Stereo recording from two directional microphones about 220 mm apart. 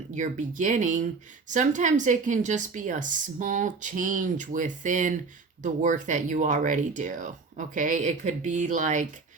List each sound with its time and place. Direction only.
0.1 s speech: 35° right (ahead or behind)